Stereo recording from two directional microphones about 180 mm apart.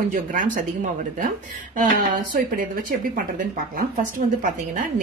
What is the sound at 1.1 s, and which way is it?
Speech, 50° right (ahead or behind).